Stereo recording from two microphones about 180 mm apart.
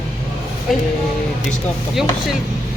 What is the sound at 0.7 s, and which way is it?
Speech, centre (ahead or behind).